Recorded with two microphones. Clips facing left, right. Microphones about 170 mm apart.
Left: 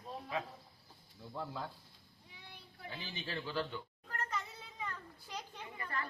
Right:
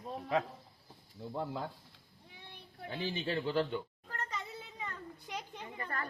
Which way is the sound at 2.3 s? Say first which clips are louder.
Right 3 dB; 55° right (ahead or behind).